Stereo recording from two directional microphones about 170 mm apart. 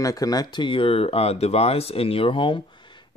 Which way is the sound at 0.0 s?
20° left (ahead or behind).